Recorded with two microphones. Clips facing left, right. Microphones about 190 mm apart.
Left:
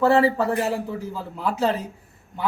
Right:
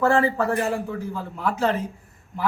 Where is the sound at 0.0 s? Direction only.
20° left (ahead or behind).